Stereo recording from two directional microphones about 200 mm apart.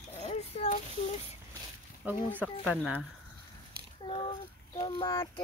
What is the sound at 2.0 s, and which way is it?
Speech, 10° right (ahead or behind).